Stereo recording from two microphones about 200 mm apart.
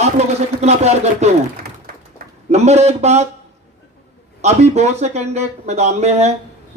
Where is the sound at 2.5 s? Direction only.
35° right (ahead or behind).